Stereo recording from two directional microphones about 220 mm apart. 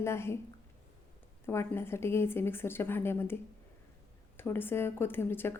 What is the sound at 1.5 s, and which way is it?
A woman's voice, 10° left (ahead or behind).